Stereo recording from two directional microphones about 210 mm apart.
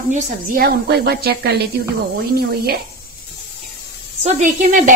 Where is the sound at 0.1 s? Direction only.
40° right (ahead or behind).